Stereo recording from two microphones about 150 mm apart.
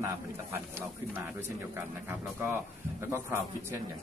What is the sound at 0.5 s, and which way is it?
Speech, 15° right (ahead or behind).